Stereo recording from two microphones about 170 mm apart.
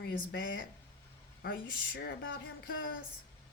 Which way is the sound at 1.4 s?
60° left (ahead or behind).